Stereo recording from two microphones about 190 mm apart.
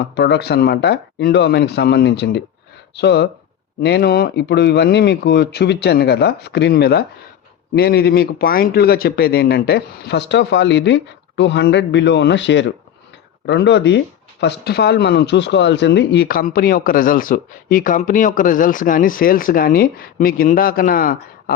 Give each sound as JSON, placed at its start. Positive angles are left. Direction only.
{"t": 0.2, "sound": "speech", "side_deg": 60}